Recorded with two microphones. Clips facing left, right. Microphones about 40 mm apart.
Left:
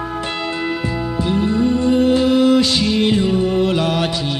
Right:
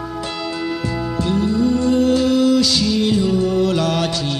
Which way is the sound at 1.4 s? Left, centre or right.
Left.